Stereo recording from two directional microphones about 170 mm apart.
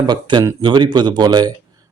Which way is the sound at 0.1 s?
25° right (ahead or behind).